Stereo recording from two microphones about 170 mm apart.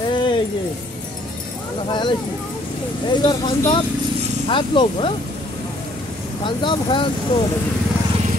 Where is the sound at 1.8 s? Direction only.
25° left (ahead or behind).